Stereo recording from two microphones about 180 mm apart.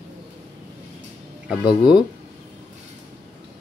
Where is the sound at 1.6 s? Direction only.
25° left (ahead or behind).